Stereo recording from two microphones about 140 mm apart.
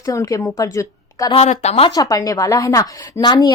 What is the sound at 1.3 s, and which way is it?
Speech, 50° left (ahead or behind).